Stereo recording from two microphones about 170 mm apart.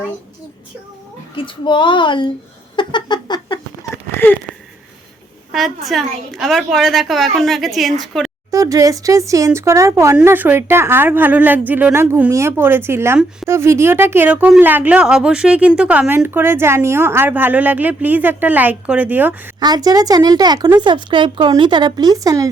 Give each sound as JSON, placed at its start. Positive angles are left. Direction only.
{"t": 1.4, "sound": "a child's voice", "side_deg": 30}
{"t": 2.7, "sound": "a sound", "side_deg": 25}
{"t": 5.5, "sound": "a woman's voice", "side_deg": 0}
{"t": 8.4, "sound": "speech", "side_deg": -20}
{"t": 19.5, "sound": "speech", "side_deg": -25}